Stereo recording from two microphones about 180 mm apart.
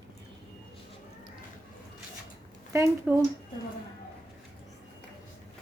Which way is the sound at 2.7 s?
15° right (ahead or behind).